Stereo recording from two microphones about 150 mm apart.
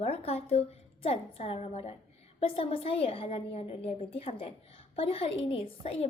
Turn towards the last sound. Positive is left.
turn(degrees=40)  # may be behind; listen again after turning